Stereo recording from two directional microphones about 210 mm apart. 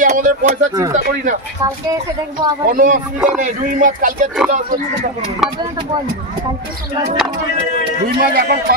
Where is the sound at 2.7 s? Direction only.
40° right (ahead or behind).